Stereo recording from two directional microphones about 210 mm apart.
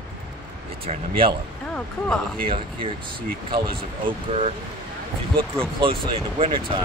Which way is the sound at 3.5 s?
25° right (ahead or behind).